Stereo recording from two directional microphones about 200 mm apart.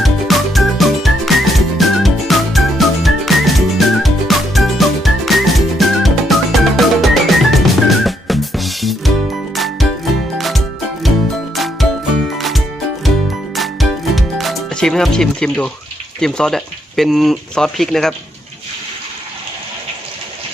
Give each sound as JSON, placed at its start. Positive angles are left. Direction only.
{"t": 0.0, "sound": "music", "side_deg": 0}
{"t": 10.3, "sound": "music", "side_deg": 0}
{"t": 16.2, "sound": "speech", "side_deg": 5}